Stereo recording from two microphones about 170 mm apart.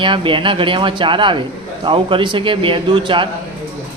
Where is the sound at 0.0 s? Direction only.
30° right (ahead or behind).